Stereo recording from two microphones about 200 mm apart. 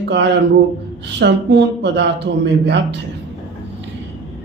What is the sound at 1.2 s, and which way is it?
Speech, 60° right (ahead or behind).